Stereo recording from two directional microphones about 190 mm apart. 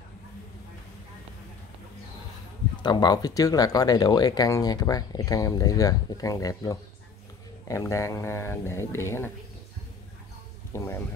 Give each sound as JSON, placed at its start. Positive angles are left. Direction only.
{"t": 2.8, "sound": "speech", "side_deg": 25}
{"t": 10.7, "sound": "speech", "side_deg": 10}